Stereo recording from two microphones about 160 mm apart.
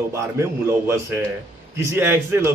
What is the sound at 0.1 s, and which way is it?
A man's voice, 15° right (ahead or behind).